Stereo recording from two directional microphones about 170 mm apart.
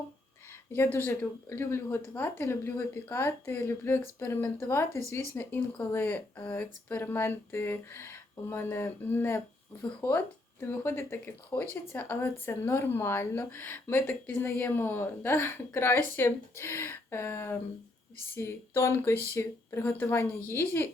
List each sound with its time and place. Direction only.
0.7 s speech: 15° left (ahead or behind)